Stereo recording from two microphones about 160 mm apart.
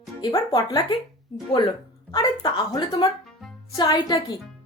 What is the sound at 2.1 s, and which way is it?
A woman's voice, 25° left (ahead or behind).